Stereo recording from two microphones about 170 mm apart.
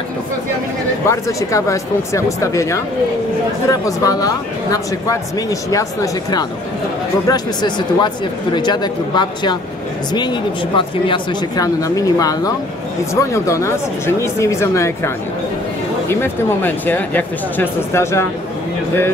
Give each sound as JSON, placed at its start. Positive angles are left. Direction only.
{"t": 1.0, "sound": "speech", "side_deg": 15}
{"t": 7.2, "sound": "speech", "side_deg": 25}
{"t": 10.8, "sound": "speech", "side_deg": 25}
{"t": 16.1, "sound": "speech", "side_deg": 15}